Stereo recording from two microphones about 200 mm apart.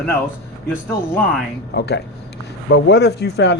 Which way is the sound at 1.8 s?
55° left (ahead or behind).